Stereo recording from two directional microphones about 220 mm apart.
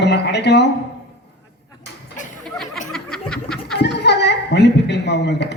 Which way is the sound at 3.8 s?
50° left (ahead or behind).